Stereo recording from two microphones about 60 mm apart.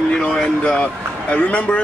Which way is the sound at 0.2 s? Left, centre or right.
Centre.